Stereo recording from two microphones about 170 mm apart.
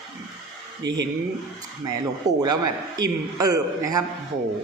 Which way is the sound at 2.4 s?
25° right (ahead or behind).